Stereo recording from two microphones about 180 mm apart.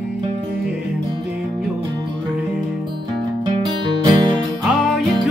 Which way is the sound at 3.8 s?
25° right (ahead or behind).